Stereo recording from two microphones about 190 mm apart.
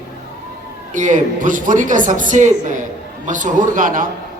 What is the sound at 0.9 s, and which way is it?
Speech, 40° right (ahead or behind).